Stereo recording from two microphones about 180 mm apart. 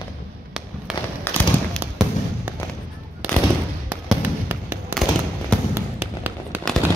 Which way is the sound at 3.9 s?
10° right (ahead or behind).